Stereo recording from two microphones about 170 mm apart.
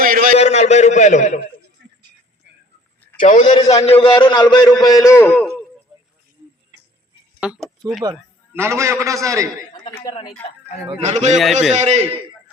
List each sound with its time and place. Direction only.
0.0 s a sound: 55° right (ahead or behind)
0.3 s a man's voice: 40° left (ahead or behind)
3.2 s a man's voice: 45° left (ahead or behind)
3.7 s a man's voice: 35° left (ahead or behind); by 5.5 s 10° left (ahead or behind)
7.3 s speech: 5° right (ahead or behind)
8.0 s a man's voice: 20° right (ahead or behind)
11.0 s a man's voice: 40° right (ahead or behind)